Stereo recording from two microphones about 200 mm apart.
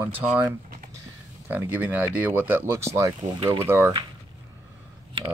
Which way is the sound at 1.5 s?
10° right (ahead or behind).